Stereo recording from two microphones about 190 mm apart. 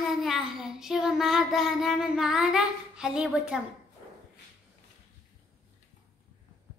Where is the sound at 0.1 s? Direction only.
Centre (ahead or behind).